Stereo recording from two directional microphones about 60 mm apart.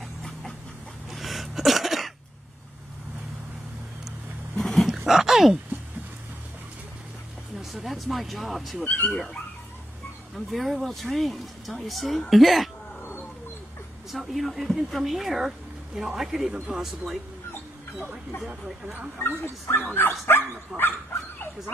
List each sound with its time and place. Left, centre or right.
1.1 s a sound: centre
4.6 s dog: centre
4.8 s roaring cats: centre
7.7 s speech: centre
10.3 s speech: centre
14.1 s speech: centre
19.2 s speech: left